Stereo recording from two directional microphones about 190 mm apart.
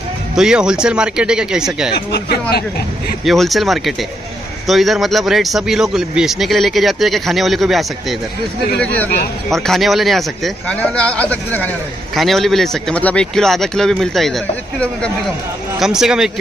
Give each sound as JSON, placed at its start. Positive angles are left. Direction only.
{"t": 0.4, "sound": "speech", "side_deg": -5}
{"t": 1.9, "sound": "speech", "side_deg": 60}
{"t": 3.3, "sound": "speech", "side_deg": 0}